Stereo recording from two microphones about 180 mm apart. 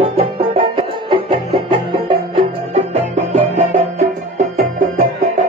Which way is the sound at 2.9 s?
40° right (ahead or behind).